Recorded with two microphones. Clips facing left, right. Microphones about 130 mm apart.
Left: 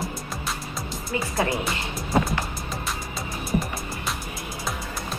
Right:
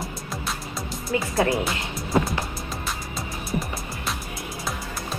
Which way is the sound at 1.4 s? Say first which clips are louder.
Right 3 dB; centre (ahead or behind).